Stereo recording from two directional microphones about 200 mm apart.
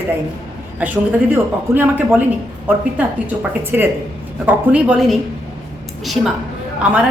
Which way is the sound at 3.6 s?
10° right (ahead or behind).